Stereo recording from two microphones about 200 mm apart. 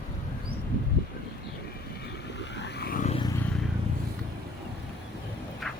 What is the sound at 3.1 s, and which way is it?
Vehicle, 20° left (ahead or behind).